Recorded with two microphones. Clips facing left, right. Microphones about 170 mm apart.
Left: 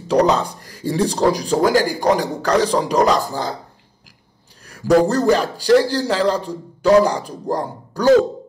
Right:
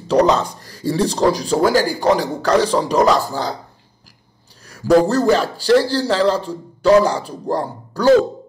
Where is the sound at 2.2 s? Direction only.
5° right (ahead or behind).